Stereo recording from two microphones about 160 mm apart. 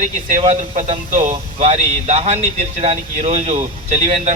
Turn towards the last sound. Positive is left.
turn(degrees=-50)  # may be behind; listen again after turning